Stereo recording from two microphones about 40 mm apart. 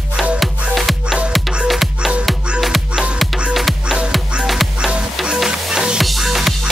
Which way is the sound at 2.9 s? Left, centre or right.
Right.